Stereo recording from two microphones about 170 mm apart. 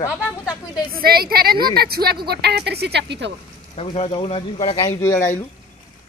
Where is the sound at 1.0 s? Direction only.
65° right (ahead or behind); by 3.3 s 85° right.